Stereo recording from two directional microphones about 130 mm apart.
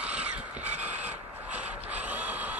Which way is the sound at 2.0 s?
10° right (ahead or behind).